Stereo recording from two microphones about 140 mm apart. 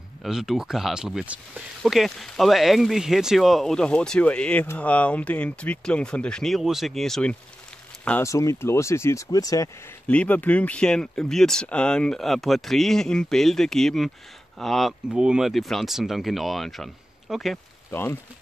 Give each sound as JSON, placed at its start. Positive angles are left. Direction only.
{"t": 0.2, "sound": "speech", "side_deg": 0}
{"t": 8.2, "sound": "speech", "side_deg": 20}
{"t": 10.0, "sound": "speech", "side_deg": 10}